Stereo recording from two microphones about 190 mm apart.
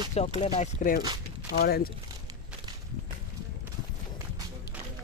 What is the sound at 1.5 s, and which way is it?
Speech, 55° left (ahead or behind).